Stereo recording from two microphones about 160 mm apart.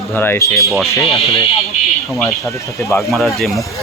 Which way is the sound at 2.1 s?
15° left (ahead or behind).